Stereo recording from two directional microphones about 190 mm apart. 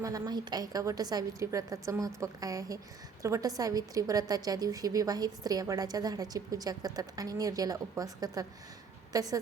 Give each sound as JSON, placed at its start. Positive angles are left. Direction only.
{"t": 0.0, "sound": "a woman's voice", "side_deg": -20}